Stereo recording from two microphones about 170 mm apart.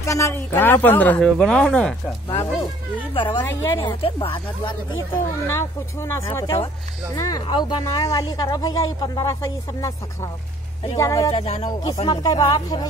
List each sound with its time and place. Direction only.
0.0 s speech: 15° left (ahead or behind)
2.2 s speech: 25° left (ahead or behind)
3.4 s speech: 10° left (ahead or behind)
4.0 s speech: 30° left (ahead or behind)
5.5 s speech: 15° left (ahead or behind)
11.3 s speech: 35° left (ahead or behind)
11.6 s speech: 25° left (ahead or behind)